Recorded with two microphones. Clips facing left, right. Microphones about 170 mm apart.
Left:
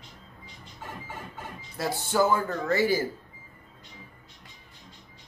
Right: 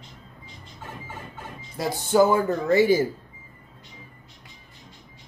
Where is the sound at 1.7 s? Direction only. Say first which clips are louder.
Right 6 dB; 15° right (ahead or behind).